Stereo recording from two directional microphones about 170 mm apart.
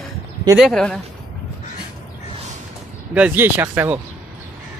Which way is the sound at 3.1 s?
10° right (ahead or behind).